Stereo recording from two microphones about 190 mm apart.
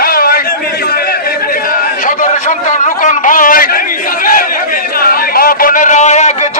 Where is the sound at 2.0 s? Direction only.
40° left (ahead or behind).